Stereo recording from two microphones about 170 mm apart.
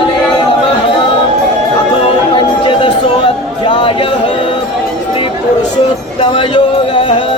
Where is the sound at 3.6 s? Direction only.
30° left (ahead or behind).